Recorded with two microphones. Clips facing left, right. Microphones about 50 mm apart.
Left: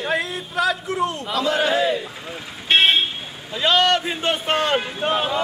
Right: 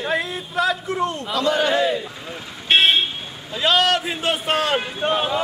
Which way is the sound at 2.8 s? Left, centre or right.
Centre.